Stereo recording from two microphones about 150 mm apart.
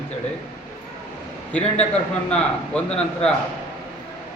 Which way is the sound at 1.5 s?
10° left (ahead or behind).